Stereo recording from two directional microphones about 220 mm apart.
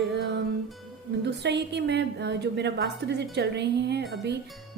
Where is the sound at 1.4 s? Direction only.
50° right (ahead or behind).